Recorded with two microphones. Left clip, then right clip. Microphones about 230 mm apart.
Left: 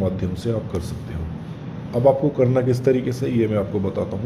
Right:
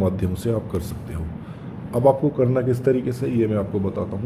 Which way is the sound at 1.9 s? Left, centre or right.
Centre.